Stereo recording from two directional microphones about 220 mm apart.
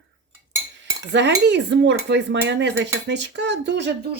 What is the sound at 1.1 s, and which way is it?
Speech, 55° right (ahead or behind).